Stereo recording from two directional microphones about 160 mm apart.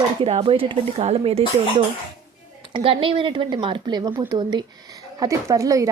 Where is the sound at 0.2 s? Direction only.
35° right (ahead or behind).